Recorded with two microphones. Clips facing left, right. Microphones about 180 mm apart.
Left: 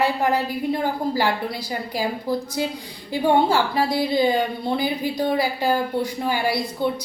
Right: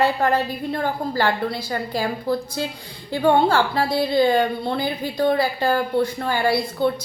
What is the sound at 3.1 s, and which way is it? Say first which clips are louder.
A woman's voice: right 1 dB; 15° left (ahead or behind).